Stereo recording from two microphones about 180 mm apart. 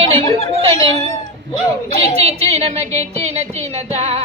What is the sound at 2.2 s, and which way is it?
A man's voice, 35° right (ahead or behind).